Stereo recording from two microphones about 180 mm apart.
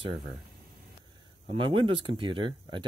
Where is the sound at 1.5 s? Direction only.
30° right (ahead or behind).